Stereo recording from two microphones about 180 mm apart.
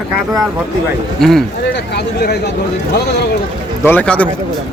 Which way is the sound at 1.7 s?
65° left (ahead or behind).